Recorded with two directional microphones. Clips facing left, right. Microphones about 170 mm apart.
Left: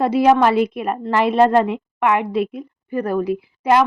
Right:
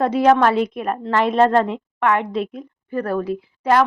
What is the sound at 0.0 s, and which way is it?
A woman's voice, 10° left (ahead or behind).